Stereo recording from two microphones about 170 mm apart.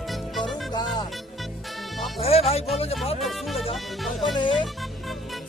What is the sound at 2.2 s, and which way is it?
Music, 35° left (ahead or behind).